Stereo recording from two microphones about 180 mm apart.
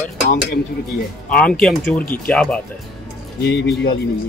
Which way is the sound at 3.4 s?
65° left (ahead or behind).